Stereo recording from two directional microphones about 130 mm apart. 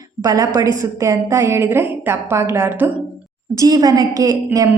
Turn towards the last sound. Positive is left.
turn(degrees=-30)  # may be behind; listen again after turning